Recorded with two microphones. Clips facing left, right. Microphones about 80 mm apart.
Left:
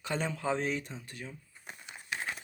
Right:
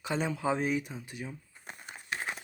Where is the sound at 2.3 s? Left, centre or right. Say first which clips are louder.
Right 1 dB; centre.